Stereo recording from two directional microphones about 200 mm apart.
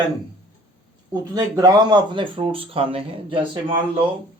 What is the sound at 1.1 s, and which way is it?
Speech, 20° right (ahead or behind).